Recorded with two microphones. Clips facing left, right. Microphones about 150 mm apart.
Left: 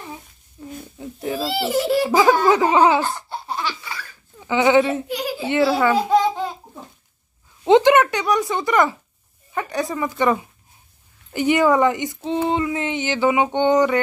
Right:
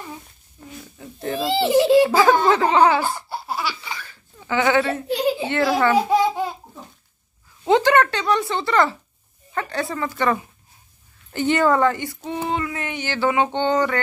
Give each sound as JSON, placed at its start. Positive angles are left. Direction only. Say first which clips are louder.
{"t": 0.9, "sound": "babbling", "louder": "even", "side_deg": 10}
{"t": 1.4, "sound": "a child's voice", "louder": "right 5 dB", "side_deg": -20}
{"t": 2.0, "sound": "a sound", "louder": "left 1 dB", "side_deg": 15}
{"t": 3.0, "sound": "laughter", "louder": "even", "side_deg": -5}
{"t": 3.8, "sound": "laughter", "louder": "even", "side_deg": -20}
{"t": 4.4, "sound": "speech", "louder": "left 3 dB", "side_deg": 15}
{"t": 5.0, "sound": "giggle", "louder": "right 6 dB", "side_deg": -30}
{"t": 5.5, "sound": "a sound", "louder": "left 5 dB", "side_deg": 15}
{"t": 5.9, "sound": "babbling", "louder": "even", "side_deg": -10}
{"t": 7.6, "sound": "a sound", "louder": "left 3 dB", "side_deg": 20}